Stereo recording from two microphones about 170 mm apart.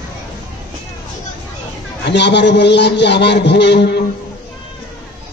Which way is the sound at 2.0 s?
85° left.